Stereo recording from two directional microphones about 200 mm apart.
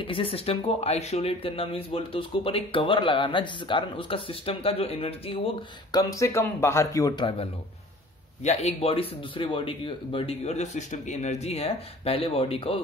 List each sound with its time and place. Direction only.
0.0 s speech: 25° left (ahead or behind)
5.9 s speech: 20° left (ahead or behind)
8.5 s speech: 30° left (ahead or behind)